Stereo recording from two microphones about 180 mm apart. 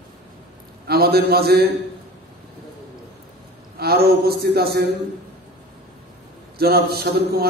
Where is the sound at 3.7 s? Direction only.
60° right (ahead or behind).